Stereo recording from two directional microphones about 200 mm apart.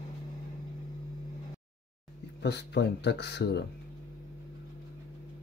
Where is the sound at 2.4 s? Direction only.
60° left (ahead or behind).